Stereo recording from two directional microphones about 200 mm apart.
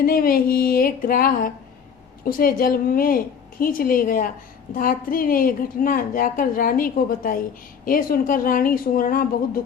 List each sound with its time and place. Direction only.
0.0 s a woman's voice: 45° left (ahead or behind)